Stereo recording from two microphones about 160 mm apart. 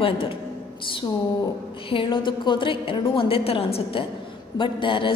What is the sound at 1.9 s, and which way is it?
A woman's voice, 30° left (ahead or behind).